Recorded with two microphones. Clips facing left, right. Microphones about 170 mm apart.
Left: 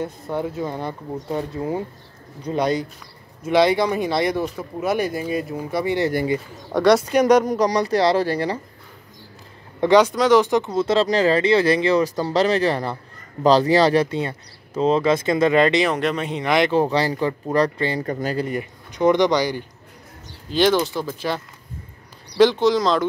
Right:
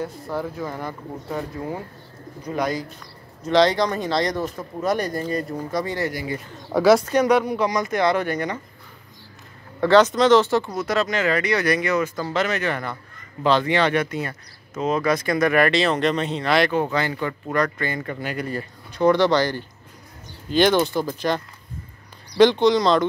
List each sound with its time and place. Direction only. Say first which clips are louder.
0.0 s speech: left 2 dB; 20° left (ahead or behind)
3.4 s speech: left 1 dB; 10° left (ahead or behind)
6.7 s speech: even; centre (ahead or behind)
7.3 s speech: left 3 dB; 40° left (ahead or behind)
9.8 s speech: even; 15° left (ahead or behind)
16.7 s speech: left 4 dB; 35° left (ahead or behind)
18.5 s speech: left 3 dB; 20° left (ahead or behind)
20.5 s speech: even; centre (ahead or behind)
22.4 s speech: even; 5° left (ahead or behind)